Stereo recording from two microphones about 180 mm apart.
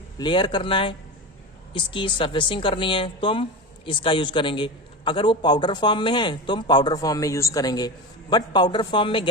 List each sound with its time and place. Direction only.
0.2 s a man's voice: 25° left (ahead or behind)